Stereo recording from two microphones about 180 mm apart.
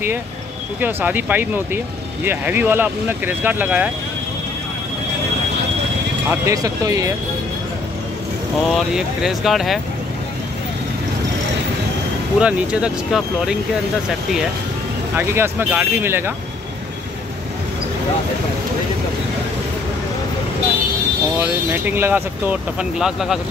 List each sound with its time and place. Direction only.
0.7 s speech: 10° right (ahead or behind)
6.4 s speech: 20° right (ahead or behind)
8.7 s speech: centre (ahead or behind)
12.4 s speech: 5° right (ahead or behind)
15.1 s speech: 15° right (ahead or behind)
21.4 s speech: 10° right (ahead or behind)